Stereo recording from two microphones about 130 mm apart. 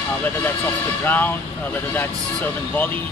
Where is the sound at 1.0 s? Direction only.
15° left (ahead or behind).